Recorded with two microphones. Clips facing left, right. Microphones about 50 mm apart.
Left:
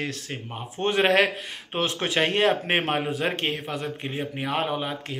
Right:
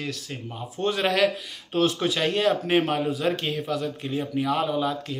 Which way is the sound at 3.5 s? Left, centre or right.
Left.